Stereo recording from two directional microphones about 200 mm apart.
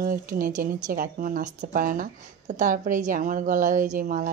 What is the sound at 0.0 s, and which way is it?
Speech, 45° right (ahead or behind).